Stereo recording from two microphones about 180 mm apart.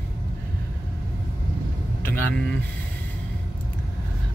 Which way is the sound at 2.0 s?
10° left (ahead or behind).